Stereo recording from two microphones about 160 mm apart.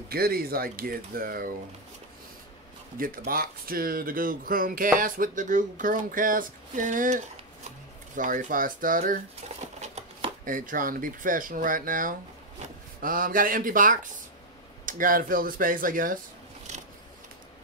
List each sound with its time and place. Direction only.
0.1 s speech: 70° right (ahead or behind)
3.3 s speech: 65° right (ahead or behind)
9.8 s speech: 45° right (ahead or behind); by 16.2 s 60° right (ahead or behind)